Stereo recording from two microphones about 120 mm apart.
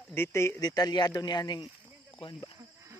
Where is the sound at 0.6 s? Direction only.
35° left (ahead or behind).